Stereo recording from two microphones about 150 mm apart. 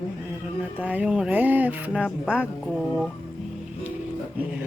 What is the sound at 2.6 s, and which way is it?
Speech, 5° left (ahead or behind).